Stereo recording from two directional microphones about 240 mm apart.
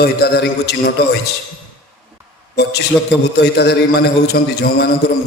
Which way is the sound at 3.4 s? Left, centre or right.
Left.